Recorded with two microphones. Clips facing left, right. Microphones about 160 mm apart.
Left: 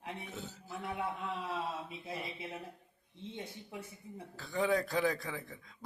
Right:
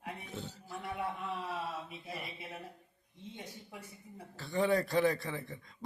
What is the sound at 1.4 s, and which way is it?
Speech, 25° left (ahead or behind).